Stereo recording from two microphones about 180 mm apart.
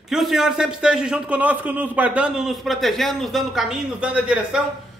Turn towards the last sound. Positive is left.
turn(degrees=-5)  # may be behind; listen again after turning